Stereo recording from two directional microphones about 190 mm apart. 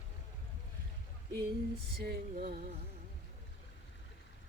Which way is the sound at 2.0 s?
55° right (ahead or behind).